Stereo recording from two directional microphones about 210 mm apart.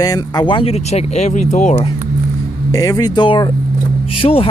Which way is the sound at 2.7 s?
15° left (ahead or behind).